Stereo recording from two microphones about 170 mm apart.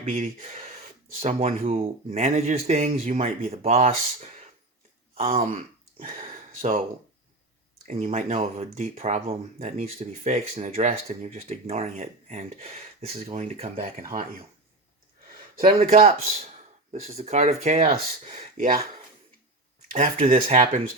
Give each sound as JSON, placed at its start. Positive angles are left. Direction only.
{"t": 0.0, "sound": "speech", "side_deg": -50}
{"t": 1.2, "sound": "speech", "side_deg": -40}
{"t": 6.0, "sound": "a sound", "side_deg": -55}
{"t": 7.9, "sound": "speech", "side_deg": -45}
{"t": 15.6, "sound": "speech", "side_deg": -35}
{"t": 19.9, "sound": "speech", "side_deg": -50}